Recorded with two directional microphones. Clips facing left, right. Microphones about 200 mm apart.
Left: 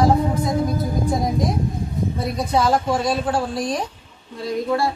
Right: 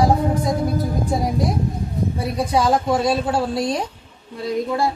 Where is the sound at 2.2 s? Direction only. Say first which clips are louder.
Right 1 dB; 10° right (ahead or behind).